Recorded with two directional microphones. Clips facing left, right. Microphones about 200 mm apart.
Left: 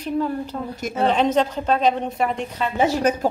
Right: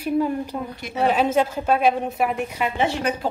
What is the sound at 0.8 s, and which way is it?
Speech, 45° left (ahead or behind).